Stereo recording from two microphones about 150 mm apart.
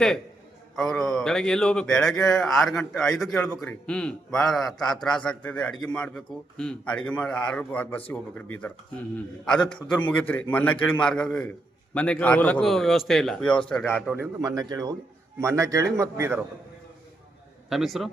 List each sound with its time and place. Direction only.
0.8 s a man's voice: centre (ahead or behind)
14.4 s a man's voice: 25° right (ahead or behind)
17.7 s a man's voice: centre (ahead or behind)